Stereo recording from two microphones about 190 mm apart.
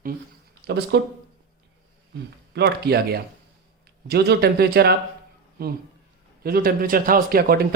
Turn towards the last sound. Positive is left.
turn(degrees=-50)  # may be behind; listen again after turning